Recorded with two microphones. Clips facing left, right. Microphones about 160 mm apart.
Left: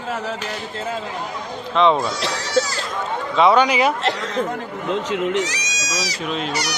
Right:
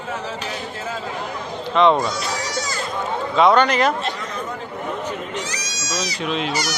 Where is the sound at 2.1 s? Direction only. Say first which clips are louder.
Left 5 dB; 70° left (ahead or behind).